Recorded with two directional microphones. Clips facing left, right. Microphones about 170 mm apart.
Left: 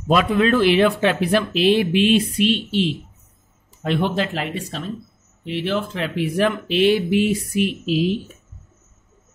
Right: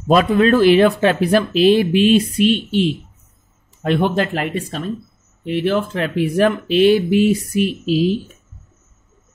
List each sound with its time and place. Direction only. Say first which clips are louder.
0.1 s speech: right 4 dB; 40° right (ahead or behind)